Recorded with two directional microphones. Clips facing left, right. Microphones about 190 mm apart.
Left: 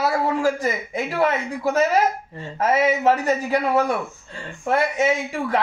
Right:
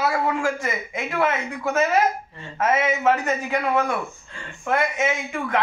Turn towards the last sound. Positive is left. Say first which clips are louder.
# left 4 dB
turn(degrees=35)  # may be behind; listen again after turning